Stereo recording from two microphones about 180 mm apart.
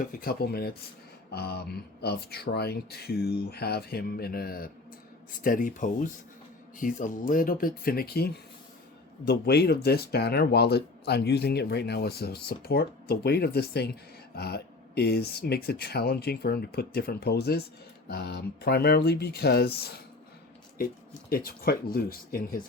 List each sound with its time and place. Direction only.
0.0 s speech: 55° left (ahead or behind)
21.2 s speech: 55° left (ahead or behind)